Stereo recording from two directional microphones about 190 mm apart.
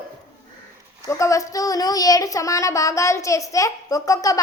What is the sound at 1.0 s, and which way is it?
Speech, 15° left (ahead or behind).